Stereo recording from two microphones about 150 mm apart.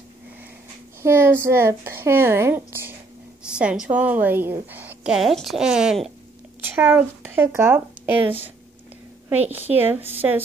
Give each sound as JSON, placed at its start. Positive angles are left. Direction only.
{"t": 1.0, "sound": "a woman's voice", "side_deg": -15}
{"t": 6.7, "sound": "a woman's voice", "side_deg": -15}